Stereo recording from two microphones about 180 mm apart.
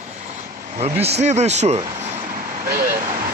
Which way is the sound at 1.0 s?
40° right (ahead or behind).